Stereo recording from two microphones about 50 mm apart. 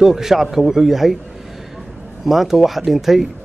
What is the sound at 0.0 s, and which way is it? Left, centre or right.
Speech, centre.